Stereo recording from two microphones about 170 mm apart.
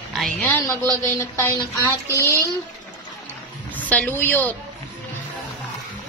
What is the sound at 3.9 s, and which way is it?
Speech, 10° left (ahead or behind).